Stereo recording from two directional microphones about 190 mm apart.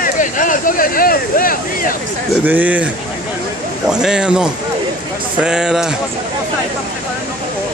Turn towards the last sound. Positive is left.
turn(degrees=-5)  # may be behind; listen again after turning